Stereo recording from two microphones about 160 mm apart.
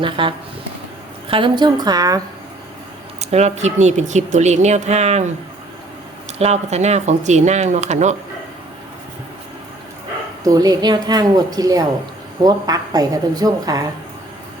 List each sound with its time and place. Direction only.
0.0 s speech: 30° right (ahead or behind)
3.2 s speech: 45° right (ahead or behind)
6.4 s speech: 45° right (ahead or behind)
10.4 s speech: 20° right (ahead or behind)